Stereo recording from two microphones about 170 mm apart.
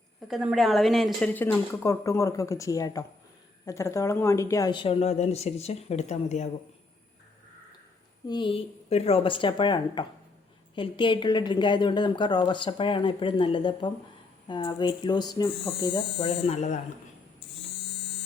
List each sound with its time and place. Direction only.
0.3 s a woman's voice: centre (ahead or behind); by 6.5 s 45° left (ahead or behind)
8.3 s a woman's voice: 30° left (ahead or behind)